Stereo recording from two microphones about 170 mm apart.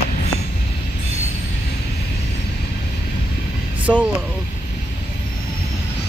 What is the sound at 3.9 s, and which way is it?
Speech, 5° left (ahead or behind).